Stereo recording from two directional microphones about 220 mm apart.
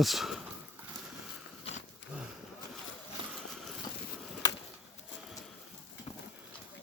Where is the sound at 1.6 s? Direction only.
30° left (ahead or behind).